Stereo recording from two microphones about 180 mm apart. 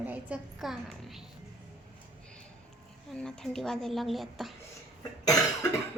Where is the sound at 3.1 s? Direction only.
5° left (ahead or behind).